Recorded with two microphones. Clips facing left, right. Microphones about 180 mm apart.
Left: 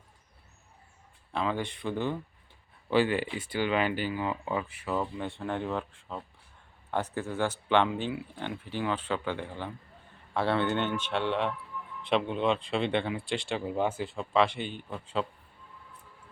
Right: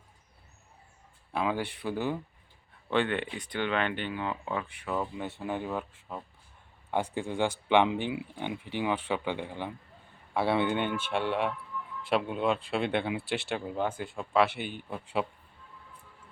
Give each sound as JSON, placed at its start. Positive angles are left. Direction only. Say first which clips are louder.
{"t": 1.3, "sound": "speech", "louder": "right 1 dB", "side_deg": -10}
{"t": 2.9, "sound": "speech", "louder": "left 3 dB", "side_deg": 5}
{"t": 13.7, "sound": "speech", "louder": "left 2 dB", "side_deg": 5}